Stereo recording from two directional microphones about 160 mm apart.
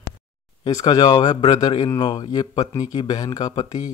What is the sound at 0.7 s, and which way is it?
Speech, 25° left (ahead or behind).